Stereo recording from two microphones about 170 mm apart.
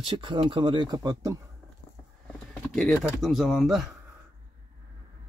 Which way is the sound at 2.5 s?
Centre (ahead or behind).